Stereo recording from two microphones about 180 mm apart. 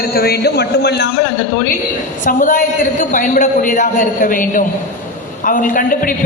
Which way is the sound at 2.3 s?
50° left (ahead or behind).